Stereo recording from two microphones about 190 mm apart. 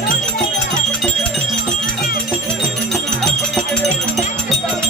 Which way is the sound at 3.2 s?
5° left (ahead or behind).